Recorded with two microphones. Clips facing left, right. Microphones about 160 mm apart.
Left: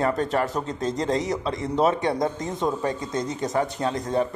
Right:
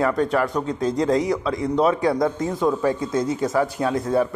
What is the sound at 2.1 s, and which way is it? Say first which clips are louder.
Speech: right 4 dB; 20° left (ahead or behind).